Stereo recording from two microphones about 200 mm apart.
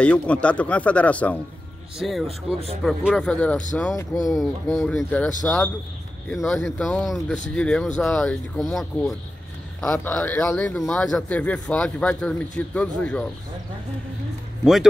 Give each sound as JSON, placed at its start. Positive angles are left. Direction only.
{"t": 0.0, "sound": "a man's voice", "side_deg": 5}
{"t": 2.2, "sound": "speech", "side_deg": -30}
{"t": 2.8, "sound": "a man's voice", "side_deg": 0}
{"t": 14.6, "sound": "a man's voice", "side_deg": 0}